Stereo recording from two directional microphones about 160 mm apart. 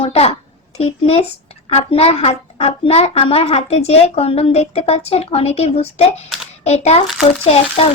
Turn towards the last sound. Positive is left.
turn(degrees=35)  # may be behind; listen again after turning